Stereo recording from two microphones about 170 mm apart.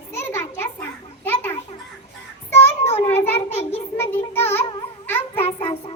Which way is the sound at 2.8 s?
35° left (ahead or behind).